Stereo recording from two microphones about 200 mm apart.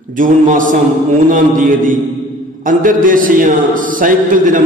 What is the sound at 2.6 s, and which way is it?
A man's voice, 40° right (ahead or behind).